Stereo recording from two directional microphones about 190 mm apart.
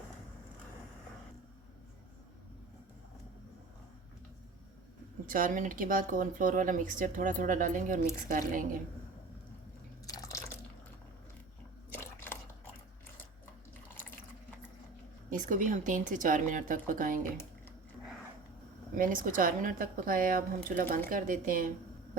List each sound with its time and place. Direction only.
5.2 s speech: 45° right (ahead or behind)
10.1 s drip: 15° left (ahead or behind)
11.9 s a sound: 10° left (ahead or behind)
15.3 s speech: 45° right (ahead or behind)
18.9 s speech: 45° right (ahead or behind)